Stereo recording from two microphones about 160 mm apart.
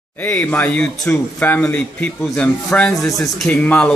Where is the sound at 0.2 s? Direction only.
10° left (ahead or behind).